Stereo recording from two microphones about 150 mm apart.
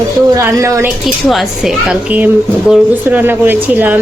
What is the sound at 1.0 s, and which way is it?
Speech, centre (ahead or behind).